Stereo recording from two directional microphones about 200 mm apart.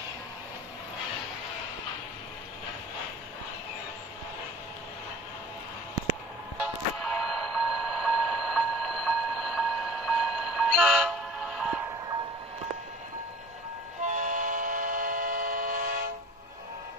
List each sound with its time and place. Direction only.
6.6 s music: centre (ahead or behind)
14.0 s train: 40° right (ahead or behind)